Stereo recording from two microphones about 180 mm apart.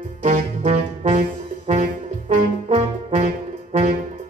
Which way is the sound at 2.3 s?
40° right (ahead or behind).